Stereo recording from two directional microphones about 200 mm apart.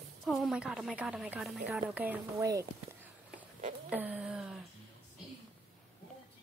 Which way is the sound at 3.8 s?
10° right (ahead or behind).